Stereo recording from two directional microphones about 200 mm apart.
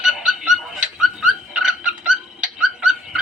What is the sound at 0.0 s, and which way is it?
Frog, 5° right (ahead or behind).